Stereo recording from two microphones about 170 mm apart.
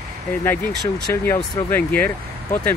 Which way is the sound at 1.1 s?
15° left (ahead or behind).